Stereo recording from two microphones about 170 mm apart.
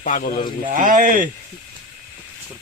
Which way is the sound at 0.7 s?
50° right (ahead or behind).